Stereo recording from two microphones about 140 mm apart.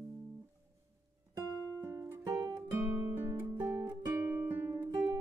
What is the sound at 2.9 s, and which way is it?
Music, 15° right (ahead or behind).